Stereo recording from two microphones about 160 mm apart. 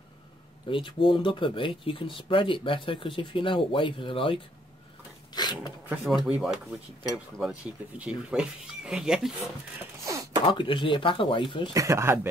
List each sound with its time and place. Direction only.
0.7 s speech: 30° left (ahead or behind)
5.3 s a sound: 25° left (ahead or behind)
5.9 s speech: 5° right (ahead or behind)
10.0 s a sound: 20° right (ahead or behind)
10.4 s speech: 30° left (ahead or behind)
11.7 s speech: 20° right (ahead or behind)